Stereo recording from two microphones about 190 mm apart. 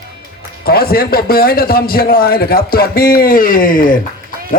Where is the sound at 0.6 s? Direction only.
55° left (ahead or behind).